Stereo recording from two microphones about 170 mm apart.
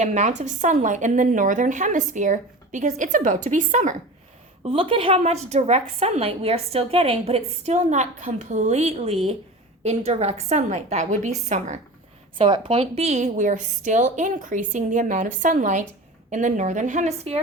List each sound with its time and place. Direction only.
0.0 s a woman's voice: 45° right (ahead or behind)
4.6 s a woman's voice: 30° right (ahead or behind)
12.4 s a woman's voice: 30° right (ahead or behind)